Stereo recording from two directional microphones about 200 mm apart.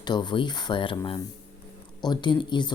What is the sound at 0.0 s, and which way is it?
Speech, 20° left (ahead or behind).